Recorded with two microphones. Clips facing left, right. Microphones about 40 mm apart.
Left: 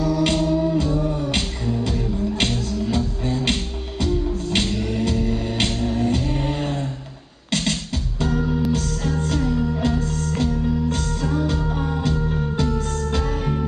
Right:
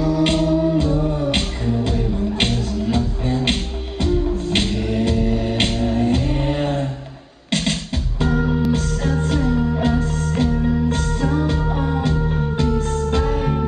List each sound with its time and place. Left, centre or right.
0.0 s music: centre
8.2 s music: centre